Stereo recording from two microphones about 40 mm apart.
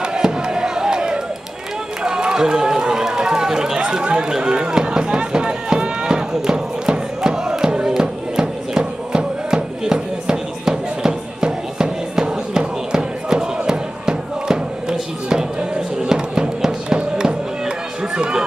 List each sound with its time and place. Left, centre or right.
0.0 s a sound: centre
2.0 s run: centre
7.9 s music: centre
16.0 s fireworks: centre